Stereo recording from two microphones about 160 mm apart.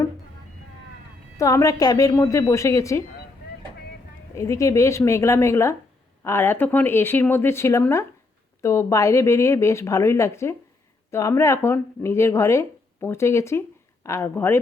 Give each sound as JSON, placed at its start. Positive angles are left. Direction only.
{"t": 1.4, "sound": "speech", "side_deg": 20}
{"t": 4.4, "sound": "speech", "side_deg": 20}